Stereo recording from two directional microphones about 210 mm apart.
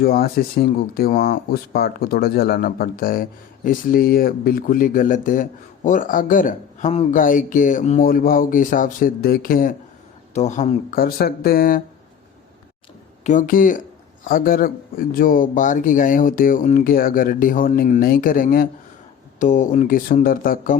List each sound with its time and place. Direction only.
0.0 s speech: 45° left (ahead or behind)
13.2 s speech: 40° left (ahead or behind)